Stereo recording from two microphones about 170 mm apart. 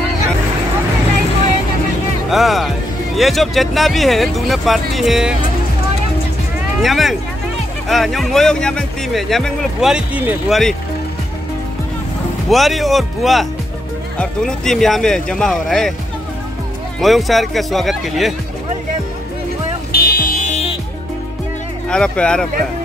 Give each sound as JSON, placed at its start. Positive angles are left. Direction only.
{"t": 2.2, "sound": "music", "side_deg": 0}
{"t": 3.2, "sound": "speech", "side_deg": 0}
{"t": 6.8, "sound": "speech", "side_deg": 0}
{"t": 12.4, "sound": "speech", "side_deg": 0}
{"t": 17.0, "sound": "speech", "side_deg": 0}
{"t": 19.9, "sound": "music", "side_deg": 65}
{"t": 21.8, "sound": "speech", "side_deg": 5}